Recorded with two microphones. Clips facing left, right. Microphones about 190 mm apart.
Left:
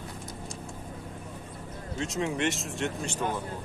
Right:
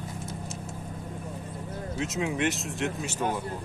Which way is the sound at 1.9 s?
Centre (ahead or behind).